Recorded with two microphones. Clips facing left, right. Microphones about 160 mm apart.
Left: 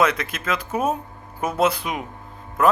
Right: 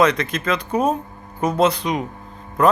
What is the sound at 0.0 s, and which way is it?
Speech, 5° left (ahead or behind).